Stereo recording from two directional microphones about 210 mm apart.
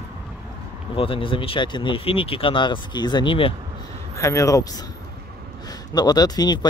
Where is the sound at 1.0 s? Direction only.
25° left (ahead or behind).